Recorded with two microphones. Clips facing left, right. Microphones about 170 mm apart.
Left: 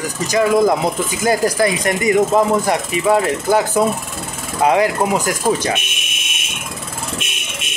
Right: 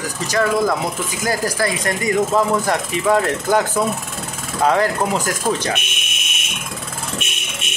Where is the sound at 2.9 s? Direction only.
5° left (ahead or behind).